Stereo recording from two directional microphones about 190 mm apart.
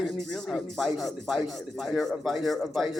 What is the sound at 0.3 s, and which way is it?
A man's voice, centre (ahead or behind).